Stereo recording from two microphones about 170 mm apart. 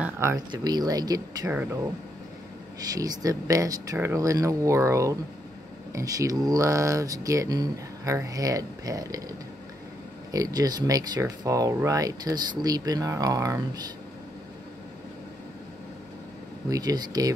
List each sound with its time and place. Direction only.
0.0 s a sound: 15° right (ahead or behind)
0.5 s speech: 25° right (ahead or behind)
2.9 s speech: 20° right (ahead or behind)
10.3 s speech: 20° right (ahead or behind)
16.6 s speech: 20° right (ahead or behind)